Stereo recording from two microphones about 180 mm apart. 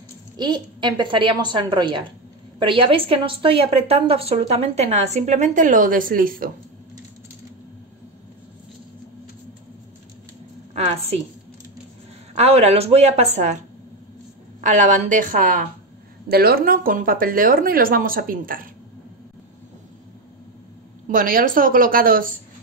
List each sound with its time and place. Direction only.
0.4 s a woman's voice: 25° right (ahead or behind); by 6.5 s 50° right (ahead or behind)
10.7 s a woman's voice: 35° right (ahead or behind)
12.4 s a woman's voice: 35° right (ahead or behind)
14.6 s speech: 45° right (ahead or behind)
21.1 s speech: 50° right (ahead or behind)